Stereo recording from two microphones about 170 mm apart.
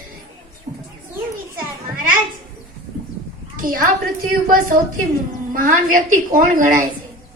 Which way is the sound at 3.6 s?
55° right (ahead or behind).